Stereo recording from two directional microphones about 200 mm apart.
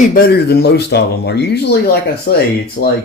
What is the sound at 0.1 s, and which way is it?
Speech, 50° left (ahead or behind).